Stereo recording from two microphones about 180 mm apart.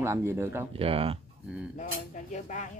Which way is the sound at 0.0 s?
15° right (ahead or behind).